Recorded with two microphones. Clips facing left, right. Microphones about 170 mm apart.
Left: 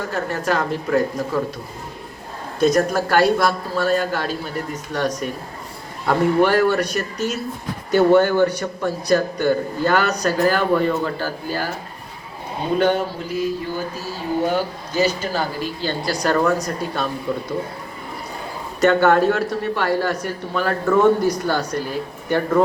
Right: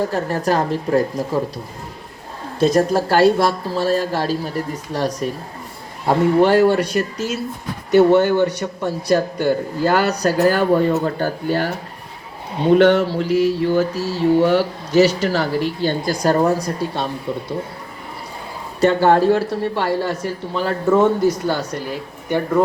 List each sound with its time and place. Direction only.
0.0 s speech: 35° right (ahead or behind)
2.6 s speech: 30° right (ahead or behind)
10.4 s speech: 40° right (ahead or behind)
11.2 s speech: 60° right (ahead or behind)
12.7 s a sound: 80° right; by 16.1 s 55° right (ahead or behind)
16.3 s speech: 35° right (ahead or behind)
18.8 s speech: 30° right (ahead or behind)